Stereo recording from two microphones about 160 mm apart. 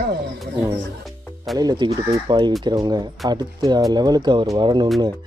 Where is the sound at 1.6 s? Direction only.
25° right (ahead or behind).